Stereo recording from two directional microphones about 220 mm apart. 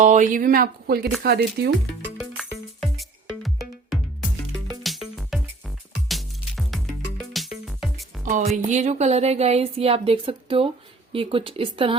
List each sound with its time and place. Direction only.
0.0 s speech: 35° right (ahead or behind)
2.3 s music: centre (ahead or behind)
8.2 s speech: 35° right (ahead or behind)